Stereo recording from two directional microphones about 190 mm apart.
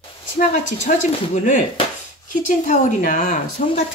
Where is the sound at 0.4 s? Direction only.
40° left (ahead or behind).